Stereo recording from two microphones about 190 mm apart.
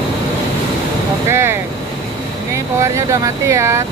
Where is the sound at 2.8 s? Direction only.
15° right (ahead or behind).